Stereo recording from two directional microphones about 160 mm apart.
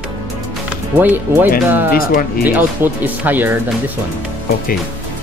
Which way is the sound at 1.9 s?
65° left (ahead or behind).